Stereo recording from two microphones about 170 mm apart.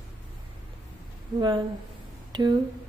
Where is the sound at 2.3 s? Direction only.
25° right (ahead or behind).